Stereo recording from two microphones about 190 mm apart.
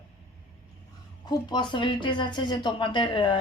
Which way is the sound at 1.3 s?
25° left (ahead or behind).